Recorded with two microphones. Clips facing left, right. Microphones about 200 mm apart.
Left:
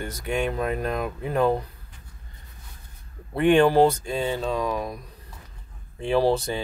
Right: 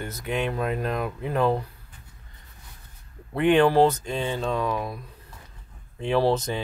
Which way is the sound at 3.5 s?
10° left (ahead or behind).